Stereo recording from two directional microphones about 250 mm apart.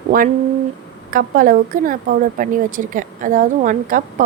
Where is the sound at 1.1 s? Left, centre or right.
Right.